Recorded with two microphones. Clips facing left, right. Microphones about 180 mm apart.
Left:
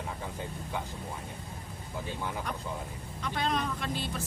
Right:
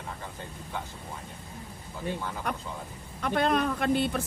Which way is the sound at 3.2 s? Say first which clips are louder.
Right 6 dB; 55° right (ahead or behind).